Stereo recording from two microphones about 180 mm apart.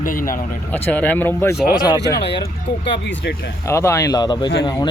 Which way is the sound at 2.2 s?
70° left (ahead or behind).